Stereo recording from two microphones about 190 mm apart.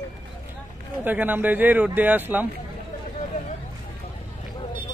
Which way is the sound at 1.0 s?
10° right (ahead or behind).